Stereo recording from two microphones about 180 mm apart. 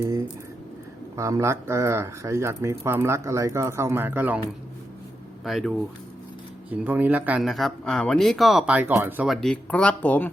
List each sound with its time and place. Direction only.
0.0 s speech: 20° right (ahead or behind)
5.5 s speech: centre (ahead or behind)